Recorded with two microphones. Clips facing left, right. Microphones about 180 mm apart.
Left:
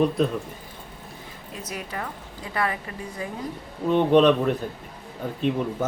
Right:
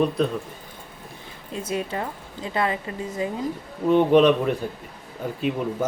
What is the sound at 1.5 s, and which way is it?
A woman's voice, 25° right (ahead or behind).